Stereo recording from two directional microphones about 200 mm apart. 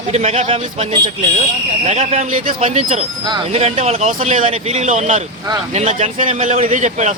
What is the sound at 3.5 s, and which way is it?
A man's voice, 30° right (ahead or behind).